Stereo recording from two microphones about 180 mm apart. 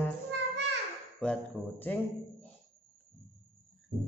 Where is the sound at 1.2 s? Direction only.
5° left (ahead or behind).